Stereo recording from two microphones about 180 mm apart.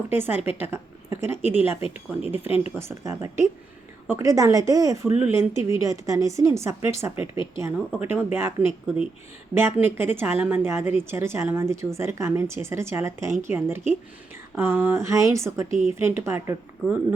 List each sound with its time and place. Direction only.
0.1 s a woman's voice: 10° right (ahead or behind)
2.4 s speech: 35° left (ahead or behind)
2.7 s a woman's voice: 15° right (ahead or behind)